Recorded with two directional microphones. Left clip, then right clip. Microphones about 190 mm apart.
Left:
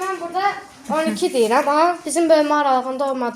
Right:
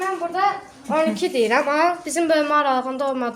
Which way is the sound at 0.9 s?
15° left (ahead or behind).